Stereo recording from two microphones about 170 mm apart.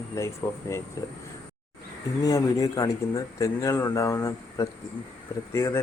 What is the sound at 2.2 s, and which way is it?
Speech, 20° left (ahead or behind).